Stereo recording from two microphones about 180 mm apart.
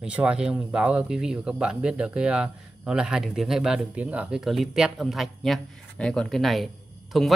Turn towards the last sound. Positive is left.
turn(degrees=0)  # may be behind; listen again after turning